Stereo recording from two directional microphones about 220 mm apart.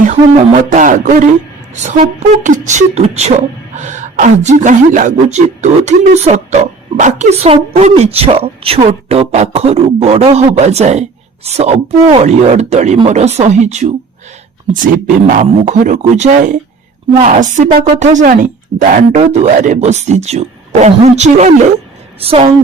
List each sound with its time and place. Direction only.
0.0 s speech: 35° right (ahead or behind)